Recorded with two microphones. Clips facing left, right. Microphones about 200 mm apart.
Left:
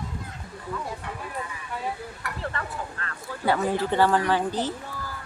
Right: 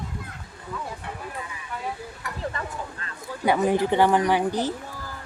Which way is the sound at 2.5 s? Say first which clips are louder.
Even; 15° right (ahead or behind).